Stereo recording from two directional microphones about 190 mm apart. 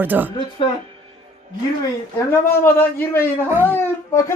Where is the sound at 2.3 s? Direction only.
10° left (ahead or behind).